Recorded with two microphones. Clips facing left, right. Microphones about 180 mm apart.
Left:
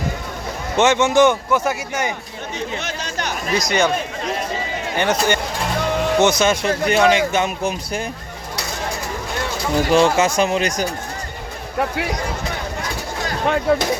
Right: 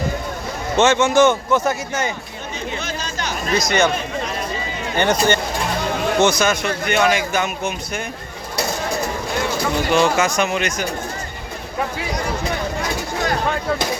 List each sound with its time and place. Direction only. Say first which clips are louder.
0.8 s speech: even; 15° left (ahead or behind)
2.6 s chatter: even; 70° left (ahead or behind)
3.5 s speech: right 1 dB; 15° left (ahead or behind)
4.9 s speech: right 2 dB; 5° left (ahead or behind)
6.1 s a man's voice: left 1 dB; 20° left (ahead or behind)
9.9 s a man's voice: left 2 dB; 30° left (ahead or behind)